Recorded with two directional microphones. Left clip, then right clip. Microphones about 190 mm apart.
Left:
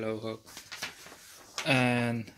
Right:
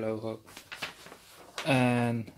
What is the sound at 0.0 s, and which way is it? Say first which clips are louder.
Speech: right 1 dB; centre (ahead or behind).